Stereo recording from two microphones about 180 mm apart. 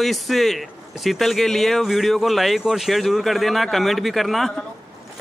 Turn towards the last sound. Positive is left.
turn(degrees=0)  # may be behind; listen again after turning